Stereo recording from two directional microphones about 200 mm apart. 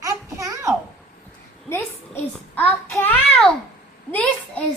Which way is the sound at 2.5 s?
10° left (ahead or behind).